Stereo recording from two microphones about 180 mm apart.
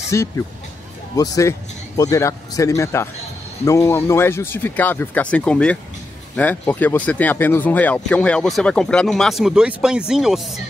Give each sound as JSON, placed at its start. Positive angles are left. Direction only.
{"t": 0.1, "sound": "speech", "side_deg": 20}